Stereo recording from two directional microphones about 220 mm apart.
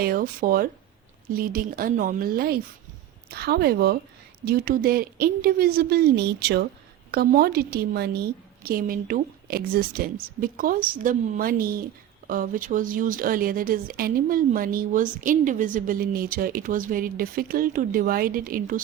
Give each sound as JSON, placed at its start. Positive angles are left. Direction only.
{"t": 0.0, "sound": "speech", "side_deg": -40}